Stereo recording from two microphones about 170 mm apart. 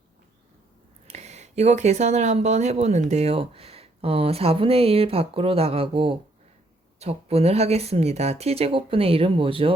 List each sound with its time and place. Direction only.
1.0 s speech: 40° right (ahead or behind)